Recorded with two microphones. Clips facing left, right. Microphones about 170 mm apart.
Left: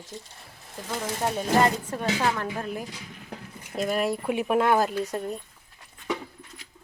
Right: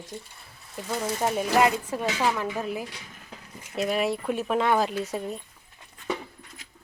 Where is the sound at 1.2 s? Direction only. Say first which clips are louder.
Even; 10° right (ahead or behind).